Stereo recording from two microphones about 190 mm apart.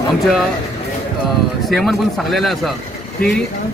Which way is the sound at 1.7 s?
Centre (ahead or behind).